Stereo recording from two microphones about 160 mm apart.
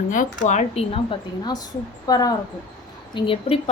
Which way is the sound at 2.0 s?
25° left (ahead or behind).